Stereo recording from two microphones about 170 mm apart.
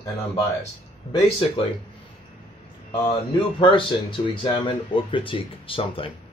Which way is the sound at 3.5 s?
30° left (ahead or behind).